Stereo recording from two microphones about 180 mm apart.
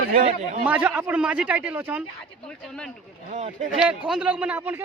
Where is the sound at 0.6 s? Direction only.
10° right (ahead or behind).